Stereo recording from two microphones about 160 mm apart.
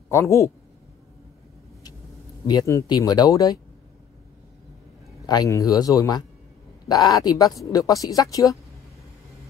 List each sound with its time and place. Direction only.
0.1 s speech: 20° left (ahead or behind)
2.4 s speech: 20° left (ahead or behind)
5.2 s speech: 25° left (ahead or behind)